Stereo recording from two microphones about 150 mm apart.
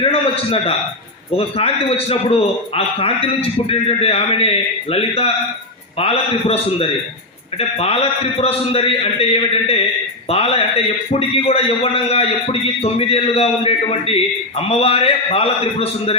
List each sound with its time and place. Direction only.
0.0 s a man's voice: 40° left (ahead or behind)